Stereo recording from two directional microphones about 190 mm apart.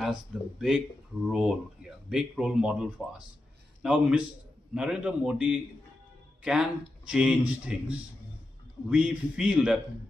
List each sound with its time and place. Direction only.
0.0 s speech: centre (ahead or behind)